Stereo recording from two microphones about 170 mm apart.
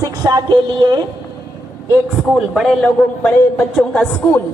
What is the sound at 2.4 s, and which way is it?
A man's voice, centre (ahead or behind).